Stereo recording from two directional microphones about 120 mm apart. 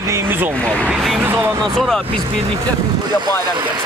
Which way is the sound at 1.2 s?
20° right (ahead or behind).